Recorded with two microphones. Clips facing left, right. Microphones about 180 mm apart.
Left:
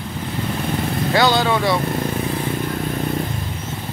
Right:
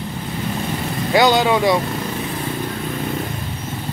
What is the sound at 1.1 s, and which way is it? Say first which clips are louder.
Speech: right 3 dB; 15° right (ahead or behind).